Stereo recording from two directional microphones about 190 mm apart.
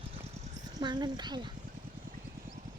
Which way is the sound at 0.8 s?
25° right (ahead or behind).